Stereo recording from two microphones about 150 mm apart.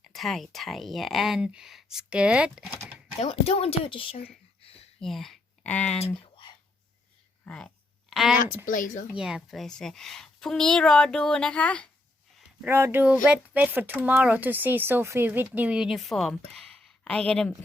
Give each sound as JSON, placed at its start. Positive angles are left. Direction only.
{"t": 0.0, "sound": "speech", "side_deg": 0}
{"t": 3.2, "sound": "speech", "side_deg": 45}
{"t": 4.9, "sound": "speech", "side_deg": 0}
{"t": 6.2, "sound": "a sound", "side_deg": 35}
{"t": 7.4, "sound": "speech", "side_deg": 5}
{"t": 8.1, "sound": "a sound", "side_deg": 0}
{"t": 8.6, "sound": "speech", "side_deg": 60}
{"t": 9.1, "sound": "speech", "side_deg": -5}
{"t": 12.6, "sound": "speech", "side_deg": -15}